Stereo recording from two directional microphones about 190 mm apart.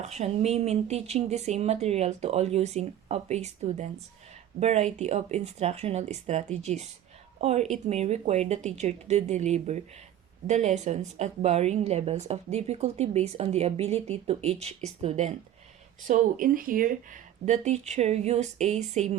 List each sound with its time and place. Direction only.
0.0 s a woman's voice: 35° right (ahead or behind)